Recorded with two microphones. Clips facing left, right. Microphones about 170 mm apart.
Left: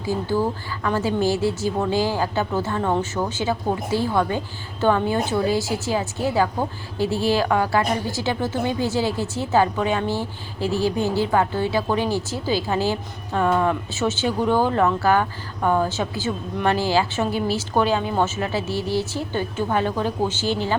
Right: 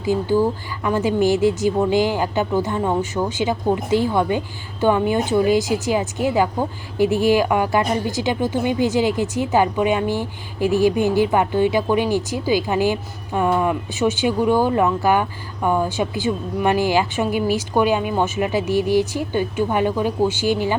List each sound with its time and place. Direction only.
0.0 s a woman's voice: 15° right (ahead or behind)